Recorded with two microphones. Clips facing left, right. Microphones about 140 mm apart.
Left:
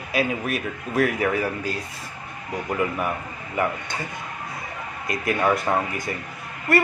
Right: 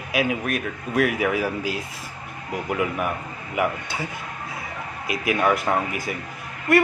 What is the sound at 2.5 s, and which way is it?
Speech, 5° right (ahead or behind).